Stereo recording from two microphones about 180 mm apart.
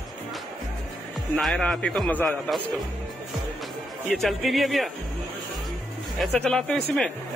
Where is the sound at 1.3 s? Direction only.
5° left (ahead or behind).